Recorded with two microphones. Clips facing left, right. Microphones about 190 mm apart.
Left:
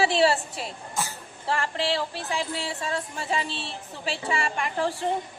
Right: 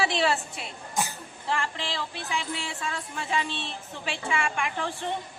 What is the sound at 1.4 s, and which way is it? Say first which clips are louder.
Music: left 4 dB; 35° left (ahead or behind).